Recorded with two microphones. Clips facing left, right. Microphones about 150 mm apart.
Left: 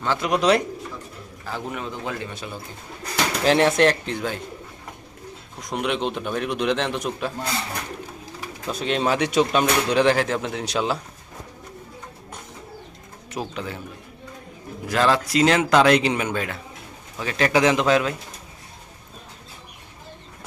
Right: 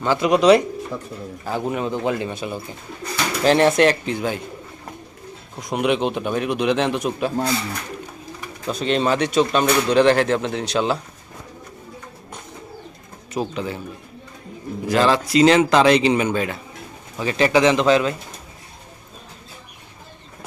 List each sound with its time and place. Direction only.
0.0 s speech: 5° right (ahead or behind)
1.5 s speech: 20° right (ahead or behind)
3.4 s speech: centre (ahead or behind)
5.6 s speech: 10° right (ahead or behind)
8.6 s speech: 5° left (ahead or behind)
13.3 s speech: centre (ahead or behind)
14.8 s speech: centre (ahead or behind)